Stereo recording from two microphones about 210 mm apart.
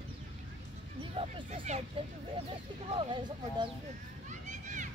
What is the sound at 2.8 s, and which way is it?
Speech, 25° right (ahead or behind).